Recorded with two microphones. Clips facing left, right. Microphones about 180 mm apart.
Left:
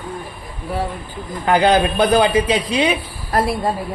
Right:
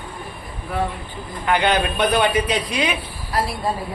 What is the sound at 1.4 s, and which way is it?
Speech, 35° left (ahead or behind).